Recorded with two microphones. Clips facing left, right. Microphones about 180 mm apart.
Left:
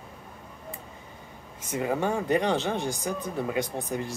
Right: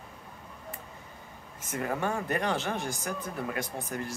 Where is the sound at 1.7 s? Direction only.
15° left (ahead or behind).